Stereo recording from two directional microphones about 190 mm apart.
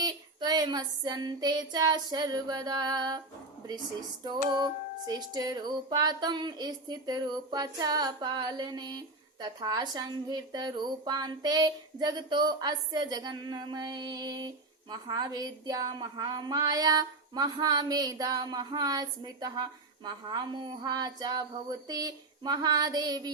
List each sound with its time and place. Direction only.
0.0 s music: 20° right (ahead or behind)
4.5 s music: 20° right (ahead or behind)